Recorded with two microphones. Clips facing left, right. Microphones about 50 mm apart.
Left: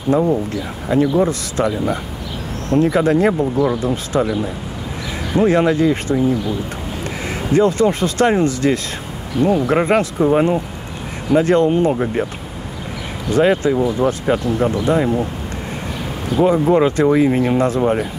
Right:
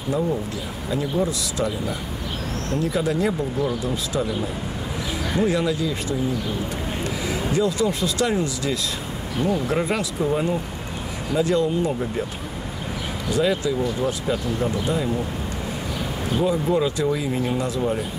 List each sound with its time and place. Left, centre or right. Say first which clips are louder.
0.1 s speech: left 8 dB; left
5.4 s speech: left 9 dB; left
7.2 s speech: left 8 dB; left
13.3 s speech: left 7 dB; left
16.3 s speech: left 8 dB; left